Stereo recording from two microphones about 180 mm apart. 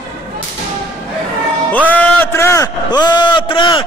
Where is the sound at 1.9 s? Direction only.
10° left (ahead or behind); by 3.8 s 25° left (ahead or behind).